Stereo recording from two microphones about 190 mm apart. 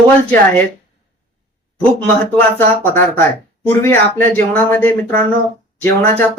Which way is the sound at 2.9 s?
10° left (ahead or behind).